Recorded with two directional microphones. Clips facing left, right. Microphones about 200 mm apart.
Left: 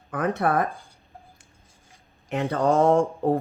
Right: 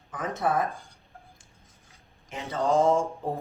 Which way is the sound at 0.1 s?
65° left (ahead or behind).